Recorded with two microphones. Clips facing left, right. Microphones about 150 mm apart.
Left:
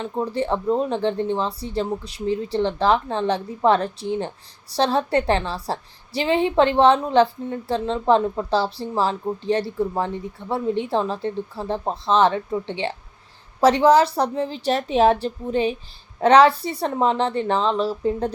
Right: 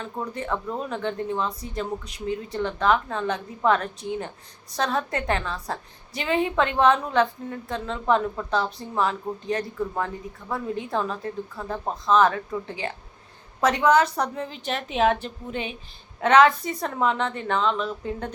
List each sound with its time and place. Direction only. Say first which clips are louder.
0.0 s a woman's voice: left 7 dB; 30° left (ahead or behind)